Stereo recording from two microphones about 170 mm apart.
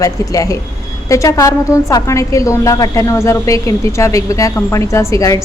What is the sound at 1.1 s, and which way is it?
A woman's voice, 20° left (ahead or behind).